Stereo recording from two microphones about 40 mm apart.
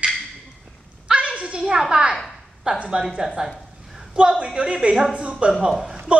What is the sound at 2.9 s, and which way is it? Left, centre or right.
A woman's voice, centre.